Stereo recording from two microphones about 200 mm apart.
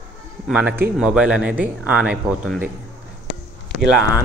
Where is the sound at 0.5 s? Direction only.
10° right (ahead or behind).